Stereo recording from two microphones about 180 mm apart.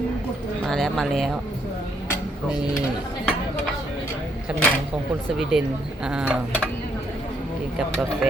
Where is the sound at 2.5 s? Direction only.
5° right (ahead or behind).